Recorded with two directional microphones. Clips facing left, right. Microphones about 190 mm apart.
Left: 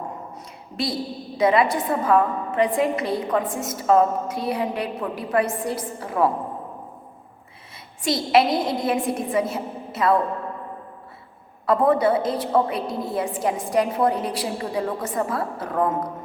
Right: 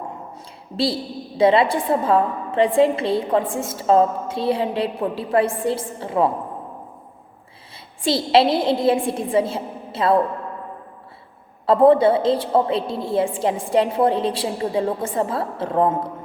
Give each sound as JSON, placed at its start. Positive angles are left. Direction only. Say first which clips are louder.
{"t": 0.3, "sound": "a sound", "louder": "right 7 dB", "side_deg": -30}
{"t": 1.4, "sound": "a woman's voice", "louder": "right 3 dB", "side_deg": -30}
{"t": 8.0, "sound": "a woman's voice", "louder": "right 2 dB", "side_deg": -30}
{"t": 11.6, "sound": "a woman's voice", "louder": "right 5 dB", "side_deg": -30}